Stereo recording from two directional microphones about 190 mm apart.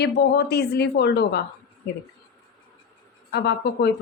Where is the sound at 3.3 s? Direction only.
60° left (ahead or behind).